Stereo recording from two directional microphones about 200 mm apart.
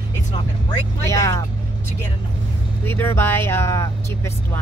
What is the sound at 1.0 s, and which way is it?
Speech, 15° left (ahead or behind).